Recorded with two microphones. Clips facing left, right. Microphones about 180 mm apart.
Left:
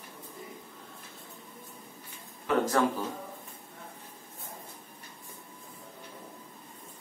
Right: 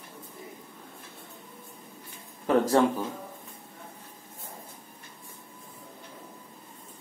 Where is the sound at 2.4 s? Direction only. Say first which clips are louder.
Right 4 dB; 35° right (ahead or behind).